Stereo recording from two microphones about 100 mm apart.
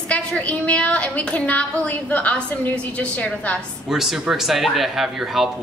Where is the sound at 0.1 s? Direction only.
15° left (ahead or behind).